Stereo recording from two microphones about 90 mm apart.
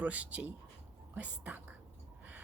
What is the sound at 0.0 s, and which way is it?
A woman's voice, 15° right (ahead or behind).